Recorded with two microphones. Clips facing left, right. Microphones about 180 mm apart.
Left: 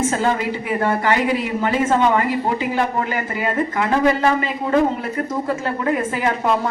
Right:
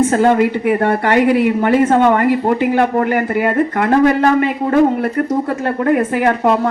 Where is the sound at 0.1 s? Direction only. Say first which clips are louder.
Right 8 dB; 60° right (ahead or behind).